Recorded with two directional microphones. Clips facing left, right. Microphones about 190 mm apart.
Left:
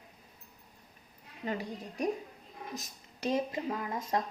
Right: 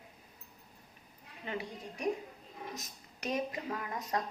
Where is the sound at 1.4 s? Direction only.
40° left (ahead or behind).